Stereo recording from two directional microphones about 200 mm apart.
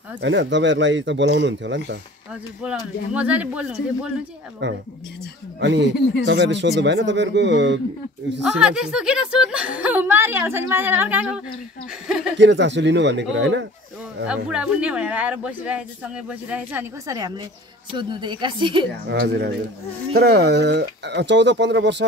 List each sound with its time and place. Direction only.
0.2 s speech: 65° right (ahead or behind)
2.6 s speech: 5° right (ahead or behind)
4.6 s speech: 60° right (ahead or behind)
8.5 s speech: 5° right (ahead or behind)
12.4 s speech: 60° right (ahead or behind)
14.2 s speech: 5° right (ahead or behind); by 18.9 s 25° right (ahead or behind)
19.0 s speech: 55° right (ahead or behind)